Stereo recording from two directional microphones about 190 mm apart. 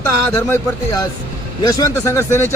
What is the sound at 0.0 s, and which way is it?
Speech, 15° left (ahead or behind).